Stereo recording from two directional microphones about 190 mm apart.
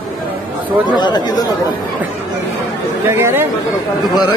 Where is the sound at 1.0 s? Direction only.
25° left (ahead or behind).